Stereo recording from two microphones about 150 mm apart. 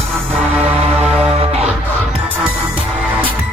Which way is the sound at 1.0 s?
10° right (ahead or behind).